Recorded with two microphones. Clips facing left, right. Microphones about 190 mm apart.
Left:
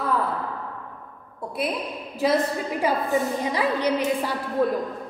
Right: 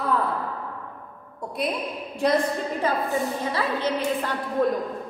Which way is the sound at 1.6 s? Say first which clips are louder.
Even; centre (ahead or behind).